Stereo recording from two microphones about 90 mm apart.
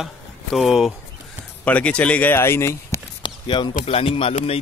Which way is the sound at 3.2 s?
60° left (ahead or behind).